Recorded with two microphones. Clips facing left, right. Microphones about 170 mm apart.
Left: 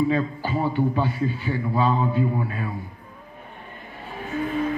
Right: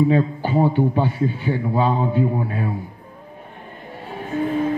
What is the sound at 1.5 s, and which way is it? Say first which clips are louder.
Speech: right 2 dB; 25° right (ahead or behind).